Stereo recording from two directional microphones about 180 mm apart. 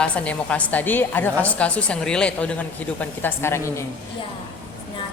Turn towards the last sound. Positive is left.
turn(degrees=15)  # may be behind; listen again after turning